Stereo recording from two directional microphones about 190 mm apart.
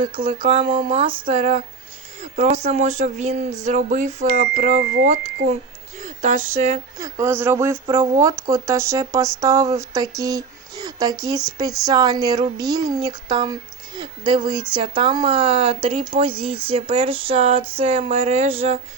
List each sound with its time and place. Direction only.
0.0 s speech: 25° right (ahead or behind); by 6.4 s 40° right (ahead or behind)
7.0 s speech: 15° right (ahead or behind); by 18.8 s 30° right (ahead or behind)